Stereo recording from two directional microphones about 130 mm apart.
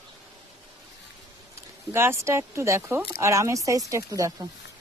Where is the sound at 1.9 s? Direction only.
20° right (ahead or behind).